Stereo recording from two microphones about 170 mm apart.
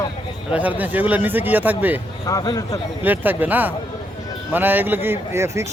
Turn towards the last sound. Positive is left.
turn(degrees=-15)  # may be behind; listen again after turning